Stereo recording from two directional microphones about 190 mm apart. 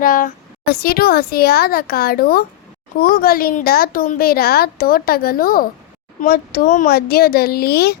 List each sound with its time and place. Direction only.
0.0 s a woman's voice: 45° left (ahead or behind)